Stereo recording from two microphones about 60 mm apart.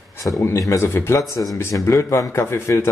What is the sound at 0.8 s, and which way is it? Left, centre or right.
Speech, left.